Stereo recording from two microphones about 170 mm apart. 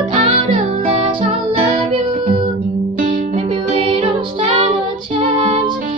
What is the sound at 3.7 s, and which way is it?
Music, 30° right (ahead or behind).